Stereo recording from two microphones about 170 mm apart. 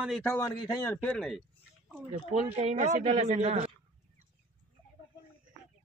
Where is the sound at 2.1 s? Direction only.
45° right (ahead or behind).